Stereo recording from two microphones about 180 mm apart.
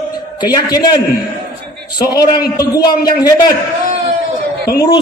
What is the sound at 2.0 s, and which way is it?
A man's voice, 20° left (ahead or behind).